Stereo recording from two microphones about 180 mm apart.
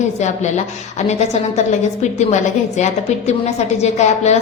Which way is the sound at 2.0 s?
40° left (ahead or behind).